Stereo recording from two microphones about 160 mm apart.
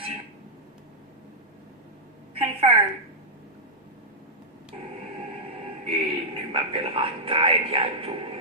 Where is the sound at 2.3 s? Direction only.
35° right (ahead or behind).